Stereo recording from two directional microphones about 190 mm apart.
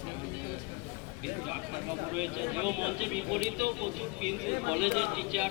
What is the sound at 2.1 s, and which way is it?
Speech, 5° right (ahead or behind).